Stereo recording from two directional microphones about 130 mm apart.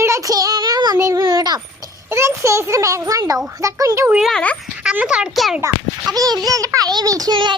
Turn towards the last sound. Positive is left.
turn(degrees=-35)  # may be behind; listen again after turning